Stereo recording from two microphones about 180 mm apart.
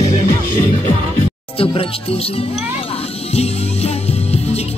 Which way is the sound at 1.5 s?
30° left (ahead or behind).